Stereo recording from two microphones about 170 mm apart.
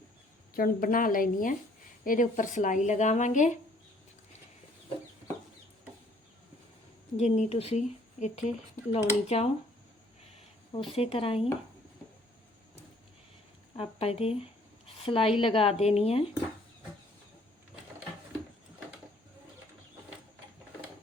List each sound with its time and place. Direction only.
0.5 s a woman's voice: 55° left (ahead or behind)
7.2 s speech: 40° left (ahead or behind)
10.3 s a sound: 30° left (ahead or behind)
10.9 s speech: 35° left (ahead or behind)
13.7 s speech: 35° left (ahead or behind)